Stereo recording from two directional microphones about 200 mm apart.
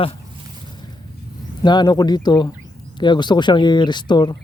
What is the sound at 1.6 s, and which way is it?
Speech, 20° left (ahead or behind).